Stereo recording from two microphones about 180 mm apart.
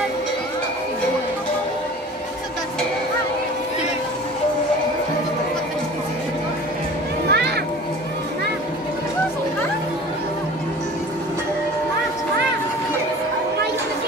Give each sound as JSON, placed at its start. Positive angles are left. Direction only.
{"t": 7.2, "sound": "music", "side_deg": -65}